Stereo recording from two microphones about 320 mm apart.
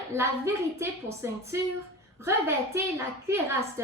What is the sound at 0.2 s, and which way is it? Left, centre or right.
Speech, centre.